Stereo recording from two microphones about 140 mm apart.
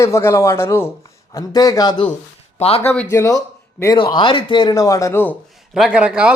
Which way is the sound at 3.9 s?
35° left (ahead or behind).